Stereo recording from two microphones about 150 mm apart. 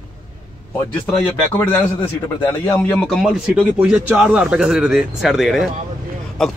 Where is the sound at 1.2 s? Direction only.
10° left (ahead or behind).